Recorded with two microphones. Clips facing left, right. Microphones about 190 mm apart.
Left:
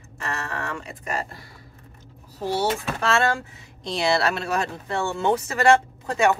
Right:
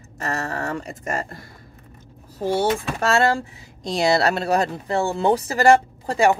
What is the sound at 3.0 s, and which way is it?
Speech, 35° right (ahead or behind).